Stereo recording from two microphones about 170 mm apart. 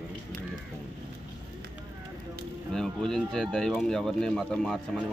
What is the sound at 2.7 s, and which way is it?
Speech, 5° left (ahead or behind).